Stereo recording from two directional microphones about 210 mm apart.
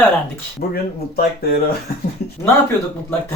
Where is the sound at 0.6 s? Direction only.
45° left (ahead or behind).